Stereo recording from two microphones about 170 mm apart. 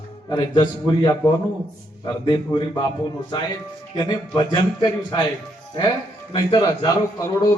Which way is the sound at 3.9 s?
20° left (ahead or behind).